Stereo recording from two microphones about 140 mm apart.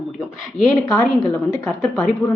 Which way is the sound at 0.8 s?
25° left (ahead or behind).